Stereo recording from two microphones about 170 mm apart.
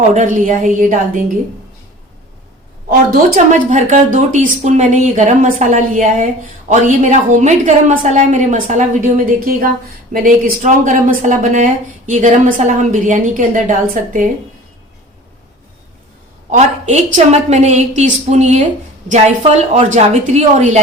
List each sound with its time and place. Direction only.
0.1 s a woman's voice: 50° right (ahead or behind)
3.1 s a woman's voice: 65° right (ahead or behind)
3.7 s a woman's voice: 45° right (ahead or behind)
16.5 s a woman's voice: 40° right (ahead or behind)